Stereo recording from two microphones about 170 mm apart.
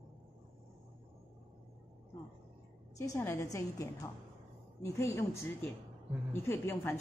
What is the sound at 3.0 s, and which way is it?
A woman's voice, 15° left (ahead or behind).